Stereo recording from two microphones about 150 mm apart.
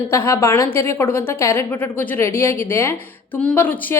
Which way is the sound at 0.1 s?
20° left (ahead or behind).